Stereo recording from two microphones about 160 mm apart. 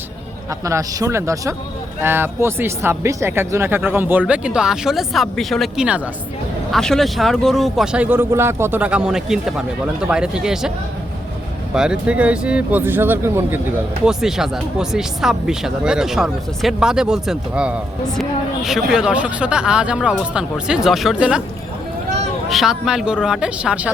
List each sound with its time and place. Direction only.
0.6 s speech: 20° right (ahead or behind); by 10.7 s 5° right (ahead or behind)
11.7 s speech: 5° right (ahead or behind)
14.0 s speech: 5° right (ahead or behind)
22.4 s speech: centre (ahead or behind)